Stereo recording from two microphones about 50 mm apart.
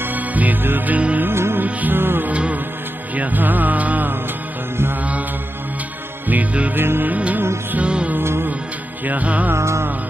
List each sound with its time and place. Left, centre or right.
0.0 s music: right
1.2 s music: right
1.6 s music: right
2.2 s music: right
6.2 s music: right
6.7 s music: right
7.1 s music: right
8.2 s music: right
9.0 s music: right
9.6 s music: right